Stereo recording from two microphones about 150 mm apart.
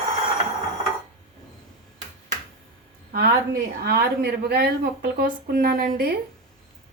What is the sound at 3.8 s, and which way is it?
A woman's voice, 90° right.